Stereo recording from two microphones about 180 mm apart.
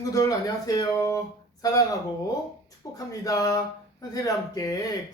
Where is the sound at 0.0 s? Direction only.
20° left (ahead or behind).